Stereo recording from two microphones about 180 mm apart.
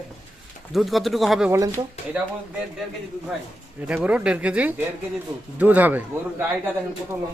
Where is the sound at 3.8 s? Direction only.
5° right (ahead or behind).